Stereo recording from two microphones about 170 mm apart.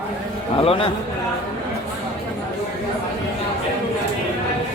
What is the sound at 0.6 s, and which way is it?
Speech, 35° left (ahead or behind).